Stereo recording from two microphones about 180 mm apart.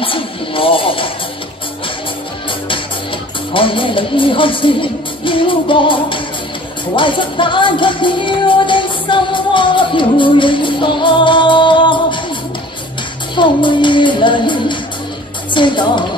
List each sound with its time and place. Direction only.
0.0 s music: 30° left (ahead or behind)
3.5 s music: 30° left (ahead or behind)
13.4 s music: 25° left (ahead or behind)